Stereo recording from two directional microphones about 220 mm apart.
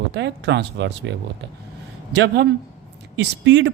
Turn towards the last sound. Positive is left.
turn(degrees=-55)  # may be behind; listen again after turning